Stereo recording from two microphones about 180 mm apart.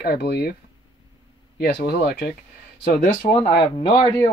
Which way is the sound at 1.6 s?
60° left (ahead or behind).